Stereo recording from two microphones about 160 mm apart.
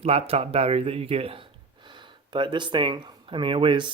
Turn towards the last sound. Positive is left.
turn(degrees=-30)  # may be behind; listen again after turning